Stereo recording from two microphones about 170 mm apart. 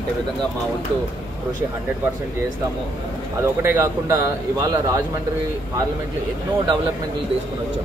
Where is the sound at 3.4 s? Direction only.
15° right (ahead or behind).